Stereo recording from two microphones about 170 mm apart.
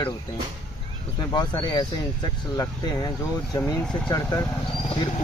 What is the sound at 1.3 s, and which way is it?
Speech, 25° left (ahead or behind).